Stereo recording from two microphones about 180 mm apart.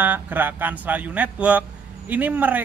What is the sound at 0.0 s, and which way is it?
Speech, 10° right (ahead or behind).